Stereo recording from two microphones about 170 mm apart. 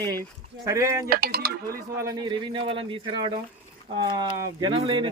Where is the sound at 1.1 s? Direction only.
65° right (ahead or behind).